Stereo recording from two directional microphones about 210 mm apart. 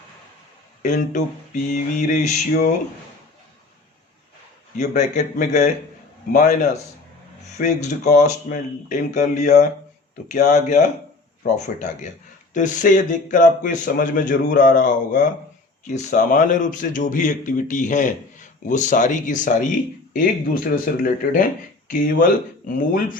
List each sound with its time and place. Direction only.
0.8 s speech: 35° left (ahead or behind)
4.8 s speech: 35° left (ahead or behind)